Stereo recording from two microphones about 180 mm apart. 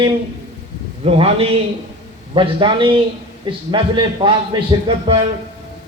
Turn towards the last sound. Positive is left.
turn(degrees=-30)  # may be behind; listen again after turning